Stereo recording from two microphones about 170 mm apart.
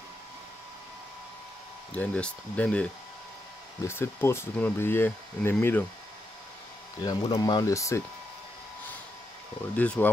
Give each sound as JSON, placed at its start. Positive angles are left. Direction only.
{"t": 2.0, "sound": "speech", "side_deg": 5}
{"t": 7.1, "sound": "speech", "side_deg": 25}
{"t": 9.8, "sound": "speech", "side_deg": 10}